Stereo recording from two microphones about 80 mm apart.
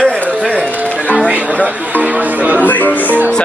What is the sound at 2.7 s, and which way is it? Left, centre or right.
Speech, left.